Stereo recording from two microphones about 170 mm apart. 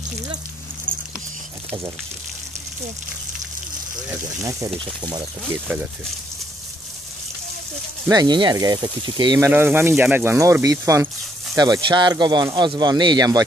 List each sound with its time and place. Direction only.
4.1 s speech: 20° right (ahead or behind)
8.1 s speech: 25° right (ahead or behind)
9.5 s speech: 10° right (ahead or behind)